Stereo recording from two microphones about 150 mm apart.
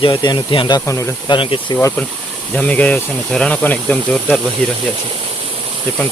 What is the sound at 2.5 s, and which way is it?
Speech, 10° left (ahead or behind).